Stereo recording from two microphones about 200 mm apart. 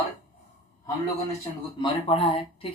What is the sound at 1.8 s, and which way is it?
Speech, 30° left (ahead or behind).